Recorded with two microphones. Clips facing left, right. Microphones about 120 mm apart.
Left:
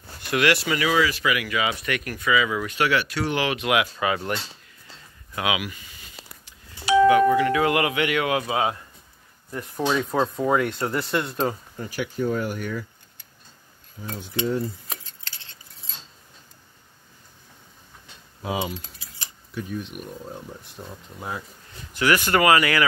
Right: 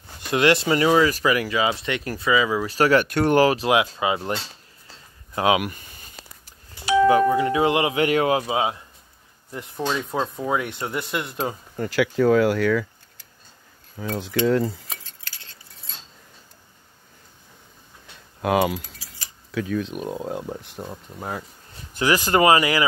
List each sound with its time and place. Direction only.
0.3 s speech: 25° right (ahead or behind)
0.7 s speech: 35° right (ahead or behind)
5.3 s speech: 35° right (ahead or behind)
5.6 s a sound: 55° right (ahead or behind)
7.1 s speech: 30° right (ahead or behind)
8.0 s speech: 35° right (ahead or behind); by 8.7 s 20° right (ahead or behind)
9.8 s speech: 10° left (ahead or behind)
10.5 s speech: 15° right (ahead or behind)
11.9 s speech: 90° right
13.9 s speech: 80° right
18.4 s speech: 70° right (ahead or behind)
19.5 s speech: 90° right; by 20.8 s 70° right (ahead or behind)
20.8 s speech: 30° right (ahead or behind)